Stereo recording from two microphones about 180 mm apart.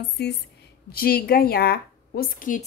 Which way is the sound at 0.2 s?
65° left (ahead or behind).